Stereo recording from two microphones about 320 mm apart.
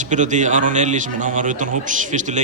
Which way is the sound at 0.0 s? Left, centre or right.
Right.